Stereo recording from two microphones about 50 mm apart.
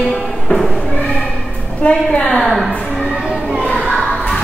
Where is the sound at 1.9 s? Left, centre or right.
Centre.